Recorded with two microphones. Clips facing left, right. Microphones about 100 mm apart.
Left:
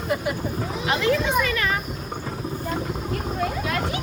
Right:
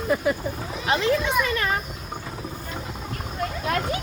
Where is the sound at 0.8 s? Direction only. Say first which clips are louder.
Even; 30° right (ahead or behind).